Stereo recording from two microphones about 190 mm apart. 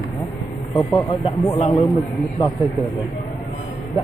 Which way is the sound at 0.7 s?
20° left (ahead or behind).